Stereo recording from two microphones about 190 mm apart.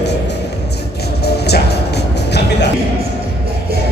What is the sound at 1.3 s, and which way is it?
Music, 60° left (ahead or behind).